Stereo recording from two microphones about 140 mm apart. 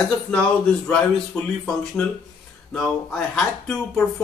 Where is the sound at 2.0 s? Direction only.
15° left (ahead or behind).